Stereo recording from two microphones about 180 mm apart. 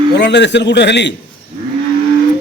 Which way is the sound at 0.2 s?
75° left (ahead or behind).